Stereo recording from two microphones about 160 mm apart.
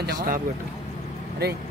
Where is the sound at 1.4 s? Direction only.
90° right.